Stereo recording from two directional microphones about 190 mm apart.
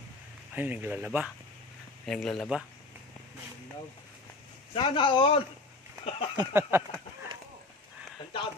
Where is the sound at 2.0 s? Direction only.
5° left (ahead or behind).